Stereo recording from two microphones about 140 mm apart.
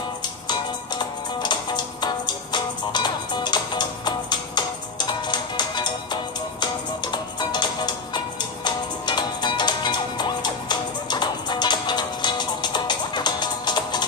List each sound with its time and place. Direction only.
0.5 s music: 30° left (ahead or behind)